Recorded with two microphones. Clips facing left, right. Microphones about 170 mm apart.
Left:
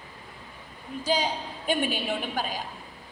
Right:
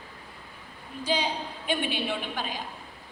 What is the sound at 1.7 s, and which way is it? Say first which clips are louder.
Speech: left 2 dB; 40° left (ahead or behind).